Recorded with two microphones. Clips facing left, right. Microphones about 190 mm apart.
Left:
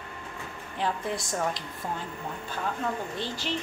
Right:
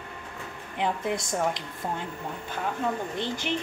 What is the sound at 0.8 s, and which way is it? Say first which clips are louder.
A woman's voice: right 2 dB; 20° right (ahead or behind).